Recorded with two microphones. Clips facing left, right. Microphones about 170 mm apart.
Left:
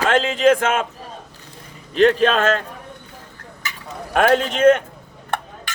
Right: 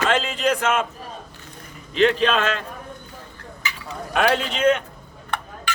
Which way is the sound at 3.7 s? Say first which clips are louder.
Even; 50° left (ahead or behind).